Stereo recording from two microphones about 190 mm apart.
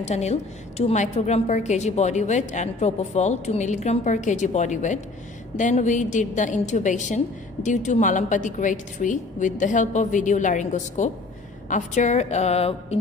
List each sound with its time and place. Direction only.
0.0 s a woman's voice: 35° left (ahead or behind)